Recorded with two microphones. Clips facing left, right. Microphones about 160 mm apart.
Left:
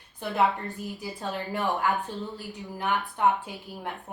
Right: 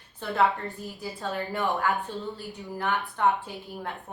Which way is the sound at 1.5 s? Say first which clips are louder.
Left 1 dB; 20° left (ahead or behind).